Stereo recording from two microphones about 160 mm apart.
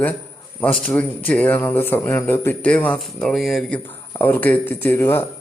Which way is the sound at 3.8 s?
10° left (ahead or behind).